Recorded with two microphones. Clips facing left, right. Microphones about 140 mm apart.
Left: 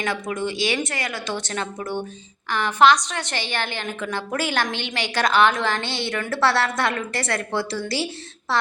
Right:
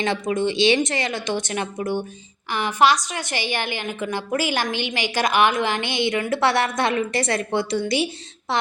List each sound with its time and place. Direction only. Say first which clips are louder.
0.0 s a woman's voice: right 4 dB; 25° right (ahead or behind)